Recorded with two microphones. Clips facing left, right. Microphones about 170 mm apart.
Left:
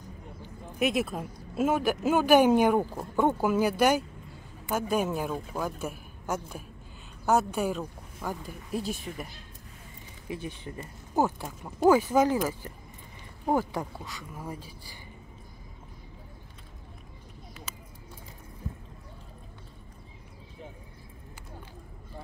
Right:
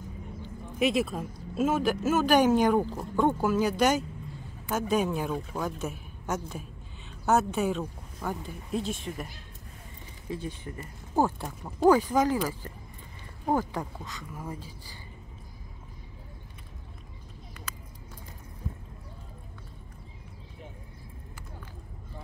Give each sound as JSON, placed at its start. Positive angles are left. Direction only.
{"t": 0.7, "sound": "speech", "side_deg": 0}
{"t": 10.3, "sound": "speech", "side_deg": 20}
{"t": 11.1, "sound": "speech", "side_deg": 5}
{"t": 12.3, "sound": "speech", "side_deg": 20}